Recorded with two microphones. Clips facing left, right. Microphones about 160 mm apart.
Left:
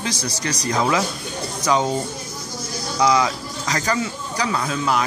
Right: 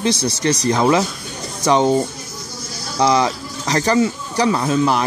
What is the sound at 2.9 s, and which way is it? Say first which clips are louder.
Speech: right 2 dB; 30° right (ahead or behind).